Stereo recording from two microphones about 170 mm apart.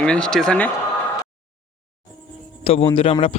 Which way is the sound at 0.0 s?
5° left (ahead or behind).